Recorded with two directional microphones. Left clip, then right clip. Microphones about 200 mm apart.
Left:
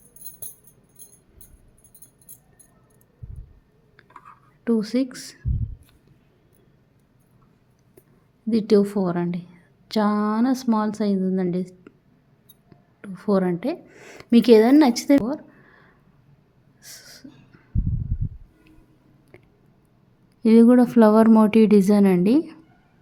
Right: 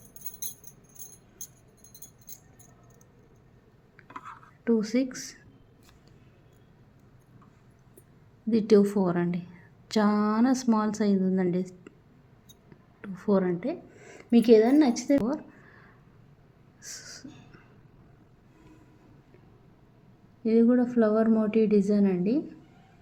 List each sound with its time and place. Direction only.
4.6 s a woman's voice: 20° left (ahead or behind)
8.4 s a woman's voice: 20° left (ahead or behind)
13.0 s a woman's voice: 20° left (ahead or behind); by 15.1 s 40° left (ahead or behind)
15.3 s a sound: 15° left (ahead or behind)
20.4 s a woman's voice: 55° left (ahead or behind)